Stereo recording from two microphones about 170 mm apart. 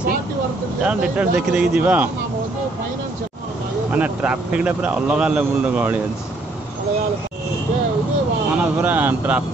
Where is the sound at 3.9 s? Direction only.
10° right (ahead or behind).